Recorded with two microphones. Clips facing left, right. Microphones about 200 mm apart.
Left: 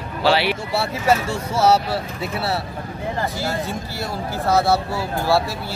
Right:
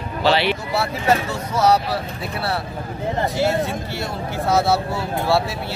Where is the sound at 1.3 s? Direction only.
30° left (ahead or behind).